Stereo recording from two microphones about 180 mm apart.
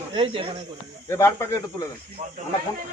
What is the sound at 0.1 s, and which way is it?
Speech, 30° right (ahead or behind).